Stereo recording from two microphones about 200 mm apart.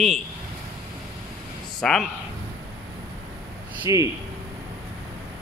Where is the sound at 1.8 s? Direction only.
Centre (ahead or behind).